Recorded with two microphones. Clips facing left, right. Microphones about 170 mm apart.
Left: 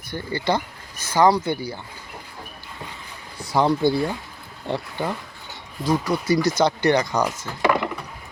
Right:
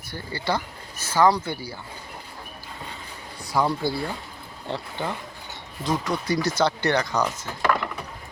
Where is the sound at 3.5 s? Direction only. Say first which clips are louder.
Left 5 dB; 25° left (ahead or behind).